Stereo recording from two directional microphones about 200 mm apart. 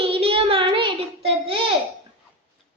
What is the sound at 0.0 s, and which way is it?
Child singing, 25° right (ahead or behind).